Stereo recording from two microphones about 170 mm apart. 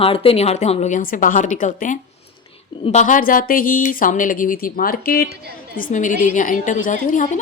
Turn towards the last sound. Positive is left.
turn(degrees=45)  # may be behind; listen again after turning